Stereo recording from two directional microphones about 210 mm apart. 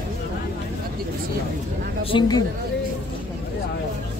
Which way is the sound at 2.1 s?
20° left (ahead or behind).